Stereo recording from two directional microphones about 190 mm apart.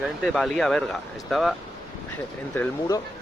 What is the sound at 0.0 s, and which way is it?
Speech, centre (ahead or behind).